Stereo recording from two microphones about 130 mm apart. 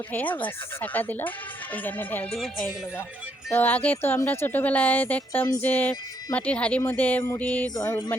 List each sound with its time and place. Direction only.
0.1 s speech: 15° left (ahead or behind)
3.5 s speech: 15° left (ahead or behind)
7.8 s music: 25° left (ahead or behind)